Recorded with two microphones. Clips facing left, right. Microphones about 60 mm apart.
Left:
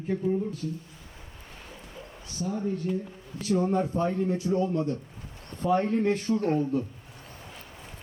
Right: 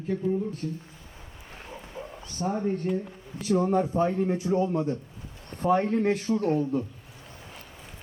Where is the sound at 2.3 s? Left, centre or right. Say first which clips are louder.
Right 2 dB; right.